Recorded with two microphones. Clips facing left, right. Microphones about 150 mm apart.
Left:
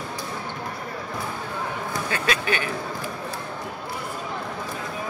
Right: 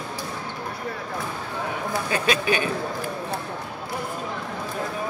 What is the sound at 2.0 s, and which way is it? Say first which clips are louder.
Speech: right 3 dB; 20° right (ahead or behind).